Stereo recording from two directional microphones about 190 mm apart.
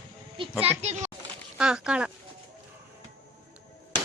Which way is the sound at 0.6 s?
35° right (ahead or behind).